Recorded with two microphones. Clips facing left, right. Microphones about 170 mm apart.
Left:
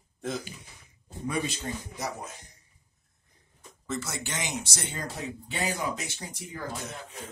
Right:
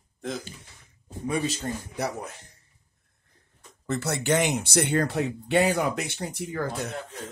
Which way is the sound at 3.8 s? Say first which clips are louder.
Right 8 dB; 65° right (ahead or behind).